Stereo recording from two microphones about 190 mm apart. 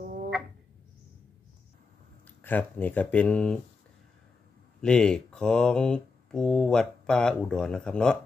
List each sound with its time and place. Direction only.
2.2 s speech: 10° left (ahead or behind)
4.8 s speech: 5° left (ahead or behind)